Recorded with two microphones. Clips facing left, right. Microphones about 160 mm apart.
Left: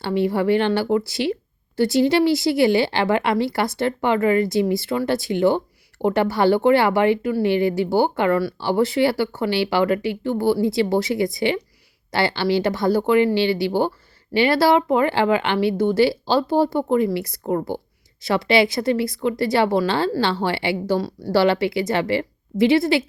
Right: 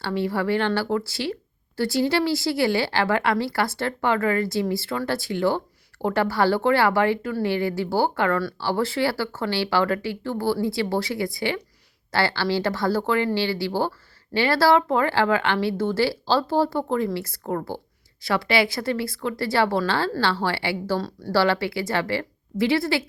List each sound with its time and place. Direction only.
0.0 s speech: 20° left (ahead or behind)